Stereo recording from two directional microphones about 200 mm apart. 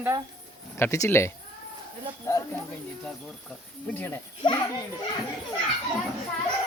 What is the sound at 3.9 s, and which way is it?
Speech, 10° left (ahead or behind).